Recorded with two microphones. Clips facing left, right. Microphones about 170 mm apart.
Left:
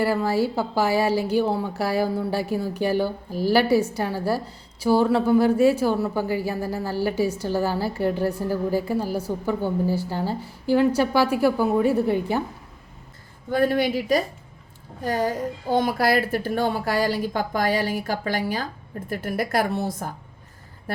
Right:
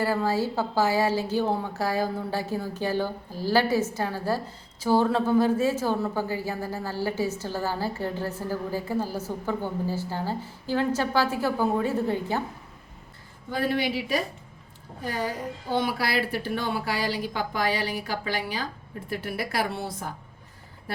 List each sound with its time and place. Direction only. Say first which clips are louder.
0.0 s a woman's voice: left 3 dB; 10° left (ahead or behind)
13.5 s speech: left 5 dB; 50° left (ahead or behind)